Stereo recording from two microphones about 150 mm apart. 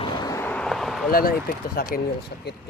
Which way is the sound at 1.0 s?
80° left.